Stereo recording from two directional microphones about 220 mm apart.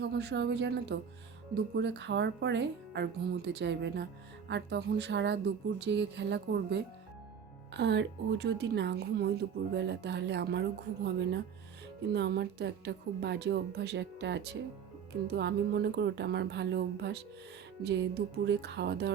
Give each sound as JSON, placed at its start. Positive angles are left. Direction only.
{"t": 0.0, "sound": "a woman's voice", "side_deg": -50}